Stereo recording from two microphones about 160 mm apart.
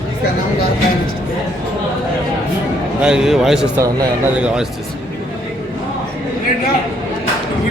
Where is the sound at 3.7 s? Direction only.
20° right (ahead or behind).